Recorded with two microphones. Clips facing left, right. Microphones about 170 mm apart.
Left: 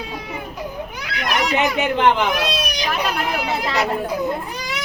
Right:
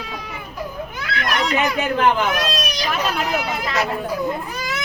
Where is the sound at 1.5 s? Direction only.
20° left (ahead or behind).